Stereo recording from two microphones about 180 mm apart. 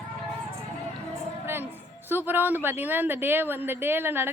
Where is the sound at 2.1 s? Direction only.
10° right (ahead or behind).